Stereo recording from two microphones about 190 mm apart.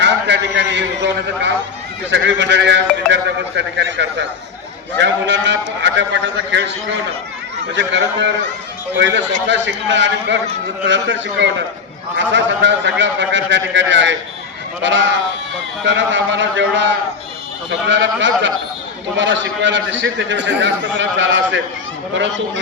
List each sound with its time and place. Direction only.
0.0 s a man's voice: 70° right (ahead or behind)